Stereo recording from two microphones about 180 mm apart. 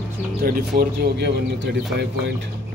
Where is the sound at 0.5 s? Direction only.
60° right (ahead or behind).